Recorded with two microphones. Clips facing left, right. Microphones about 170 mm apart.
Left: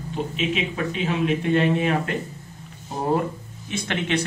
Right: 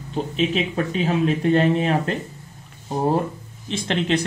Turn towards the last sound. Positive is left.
turn(degrees=-30)  # may be behind; listen again after turning